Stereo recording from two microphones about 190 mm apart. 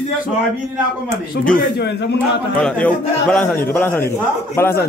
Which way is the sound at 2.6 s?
5° left (ahead or behind).